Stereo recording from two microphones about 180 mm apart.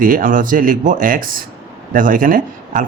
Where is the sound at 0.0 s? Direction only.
50° right (ahead or behind).